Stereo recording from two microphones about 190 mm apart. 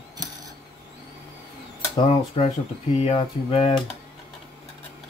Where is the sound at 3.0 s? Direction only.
30° left (ahead or behind).